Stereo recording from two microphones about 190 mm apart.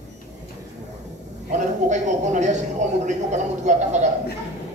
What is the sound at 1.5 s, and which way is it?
Speech, 40° right (ahead or behind).